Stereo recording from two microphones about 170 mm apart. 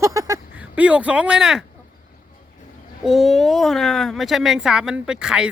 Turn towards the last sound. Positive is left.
turn(degrees=-5)  # may be behind; listen again after turning